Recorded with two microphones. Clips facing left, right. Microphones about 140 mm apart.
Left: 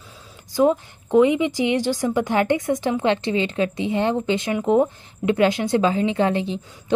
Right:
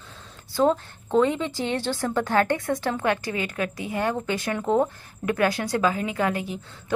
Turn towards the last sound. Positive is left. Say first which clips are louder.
# left 5 dB
turn(degrees=25)  # may be behind; listen again after turning